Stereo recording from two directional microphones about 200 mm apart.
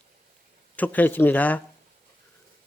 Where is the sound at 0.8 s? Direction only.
10° left (ahead or behind).